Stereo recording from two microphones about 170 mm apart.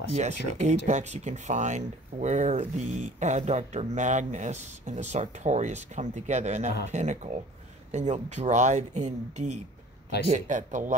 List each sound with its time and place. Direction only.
0.1 s speech: 40° right (ahead or behind)